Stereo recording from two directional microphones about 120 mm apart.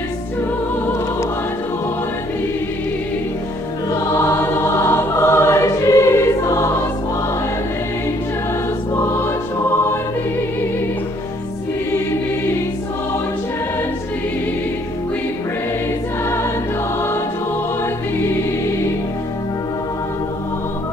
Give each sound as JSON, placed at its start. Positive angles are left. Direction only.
{"t": 3.9, "sound": "choir", "side_deg": 20}